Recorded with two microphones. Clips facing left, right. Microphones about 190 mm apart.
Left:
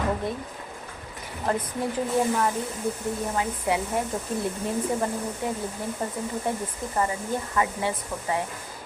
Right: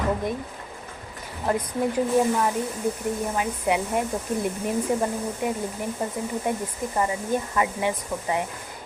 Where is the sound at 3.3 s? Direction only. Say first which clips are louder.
Right 1 dB; 20° right (ahead or behind).